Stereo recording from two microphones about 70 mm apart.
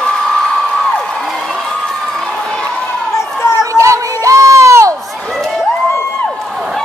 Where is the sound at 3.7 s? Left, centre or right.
Right.